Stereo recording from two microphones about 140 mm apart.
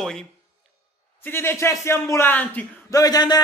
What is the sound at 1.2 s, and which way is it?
A man's voice, 15° left (ahead or behind).